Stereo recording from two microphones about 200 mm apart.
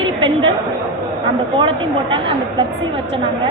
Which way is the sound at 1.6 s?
25° right (ahead or behind).